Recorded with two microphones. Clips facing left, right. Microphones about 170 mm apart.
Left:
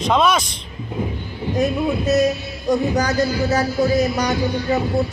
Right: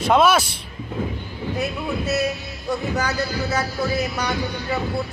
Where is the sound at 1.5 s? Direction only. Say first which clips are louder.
Left 7 dB; 35° left (ahead or behind).